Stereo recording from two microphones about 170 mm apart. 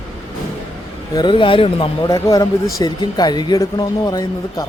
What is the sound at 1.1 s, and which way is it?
Speech, 30° left (ahead or behind).